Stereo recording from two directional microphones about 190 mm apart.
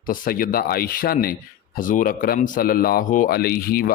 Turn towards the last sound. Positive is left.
turn(degrees=50)  # may be behind; listen again after turning